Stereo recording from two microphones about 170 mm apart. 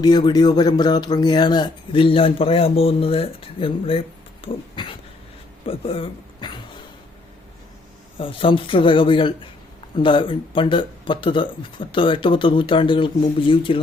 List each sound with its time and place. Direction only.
0.0 s speech: 25° left (ahead or behind)
8.2 s speech: 30° left (ahead or behind)